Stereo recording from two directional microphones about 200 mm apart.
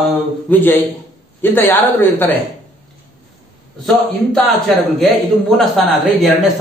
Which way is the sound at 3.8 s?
5° left (ahead or behind).